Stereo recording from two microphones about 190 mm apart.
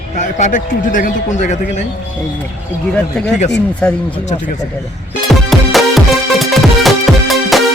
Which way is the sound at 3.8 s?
10° left (ahead or behind).